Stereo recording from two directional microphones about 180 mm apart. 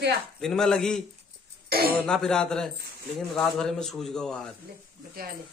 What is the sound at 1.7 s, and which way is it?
Speech, 55° right (ahead or behind).